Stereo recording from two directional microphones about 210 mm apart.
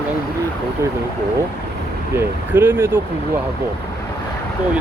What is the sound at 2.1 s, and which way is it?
Speech, 10° right (ahead or behind).